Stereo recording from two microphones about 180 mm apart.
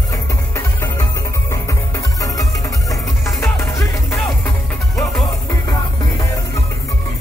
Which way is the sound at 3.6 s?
15° left (ahead or behind).